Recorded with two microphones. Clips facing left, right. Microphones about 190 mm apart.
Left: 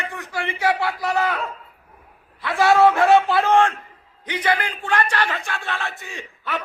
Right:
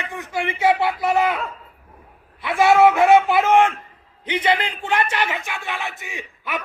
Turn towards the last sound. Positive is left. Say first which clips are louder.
# even
turn(degrees=-20)  # may be behind; listen again after turning